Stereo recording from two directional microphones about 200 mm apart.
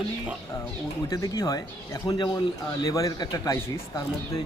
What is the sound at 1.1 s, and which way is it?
Speech, 15° left (ahead or behind).